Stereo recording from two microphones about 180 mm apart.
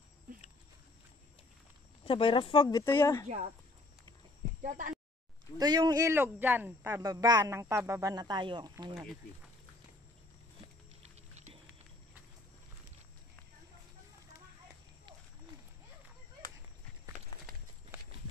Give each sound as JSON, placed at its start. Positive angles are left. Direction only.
{"t": 2.0, "sound": "speech", "side_deg": 30}
{"t": 3.3, "sound": "speech", "side_deg": -40}
{"t": 4.6, "sound": "speech", "side_deg": -45}
{"t": 5.6, "sound": "speech", "side_deg": -20}
{"t": 11.0, "sound": "a sound", "side_deg": -35}
{"t": 17.9, "sound": "horse", "side_deg": -15}